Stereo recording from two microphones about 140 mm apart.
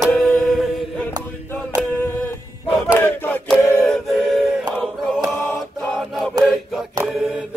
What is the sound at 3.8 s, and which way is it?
A capella, centre (ahead or behind).